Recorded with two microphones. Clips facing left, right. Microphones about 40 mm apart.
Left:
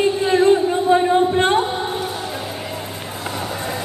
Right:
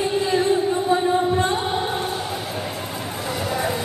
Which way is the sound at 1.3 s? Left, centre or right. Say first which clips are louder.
Left 5 dB; left.